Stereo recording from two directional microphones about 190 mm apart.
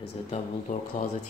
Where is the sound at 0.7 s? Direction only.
45° left (ahead or behind).